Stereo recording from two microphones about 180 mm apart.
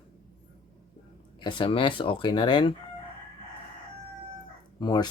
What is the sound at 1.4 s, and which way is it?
Speech, 25° left (ahead or behind).